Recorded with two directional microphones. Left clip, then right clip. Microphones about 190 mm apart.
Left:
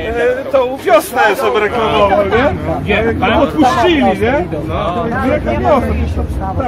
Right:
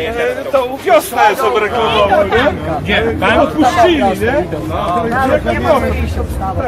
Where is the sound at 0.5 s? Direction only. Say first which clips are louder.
Right 1 dB; 30° left (ahead or behind).